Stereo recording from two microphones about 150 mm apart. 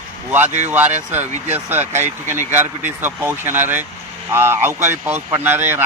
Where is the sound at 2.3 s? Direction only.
55° right (ahead or behind).